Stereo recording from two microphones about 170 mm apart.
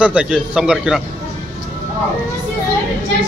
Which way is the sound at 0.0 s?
5° right (ahead or behind).